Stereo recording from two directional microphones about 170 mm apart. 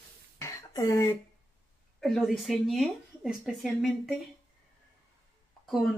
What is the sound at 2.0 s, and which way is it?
Speech, centre (ahead or behind).